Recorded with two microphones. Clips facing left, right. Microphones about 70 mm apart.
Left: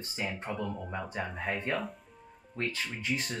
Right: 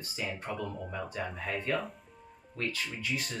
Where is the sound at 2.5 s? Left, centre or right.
Left.